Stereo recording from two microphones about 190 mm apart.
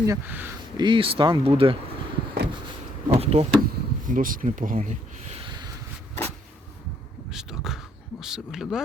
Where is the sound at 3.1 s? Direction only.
35° right (ahead or behind).